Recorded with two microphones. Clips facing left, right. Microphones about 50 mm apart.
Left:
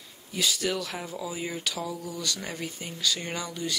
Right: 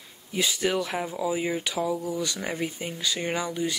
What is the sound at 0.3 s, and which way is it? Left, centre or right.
Speech, right.